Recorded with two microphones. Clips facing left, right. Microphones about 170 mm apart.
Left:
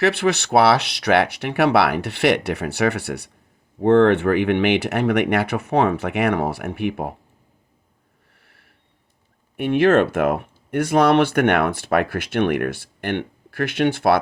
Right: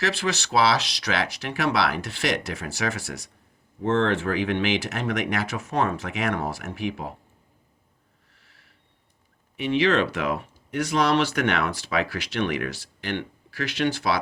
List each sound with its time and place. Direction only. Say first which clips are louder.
0.0 s speech: left 8 dB; 60° left (ahead or behind)
8.4 s a sound: left 3 dB; 60° left (ahead or behind)
9.6 s speech: left 6 dB; 55° left (ahead or behind)